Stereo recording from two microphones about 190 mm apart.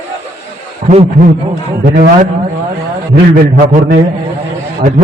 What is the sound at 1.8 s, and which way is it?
Speech, 45° right (ahead or behind).